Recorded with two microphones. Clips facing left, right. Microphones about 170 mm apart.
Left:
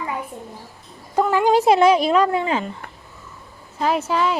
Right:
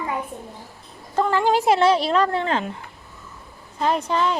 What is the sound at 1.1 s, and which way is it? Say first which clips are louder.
Speech: left 3 dB; 10° left (ahead or behind).